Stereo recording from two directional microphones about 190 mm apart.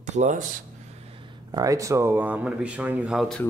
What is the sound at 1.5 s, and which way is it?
Speech, 20° right (ahead or behind).